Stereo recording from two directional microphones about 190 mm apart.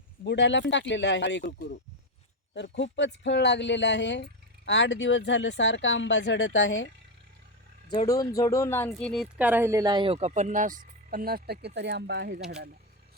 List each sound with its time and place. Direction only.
0.3 s speech: 65° left (ahead or behind); by 6.8 s 90° left
7.9 s speech: 20° left (ahead or behind)
8.9 s speech: centre (ahead or behind); by 12.4 s 65° right (ahead or behind)